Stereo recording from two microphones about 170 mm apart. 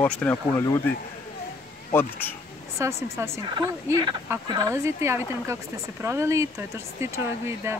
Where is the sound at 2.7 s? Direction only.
15° right (ahead or behind).